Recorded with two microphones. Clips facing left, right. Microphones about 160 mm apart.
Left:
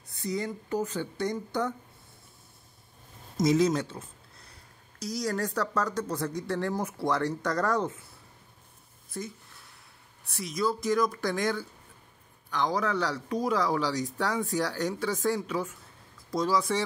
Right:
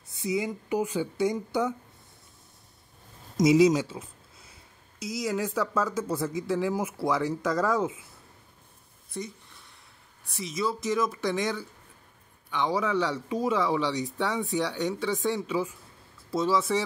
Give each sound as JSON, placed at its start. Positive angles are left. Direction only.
{"t": 0.2, "sound": "speech", "side_deg": -10}
{"t": 3.3, "sound": "speech", "side_deg": -10}
{"t": 10.2, "sound": "speech", "side_deg": 0}